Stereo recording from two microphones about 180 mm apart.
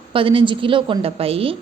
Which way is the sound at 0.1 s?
30° right (ahead or behind).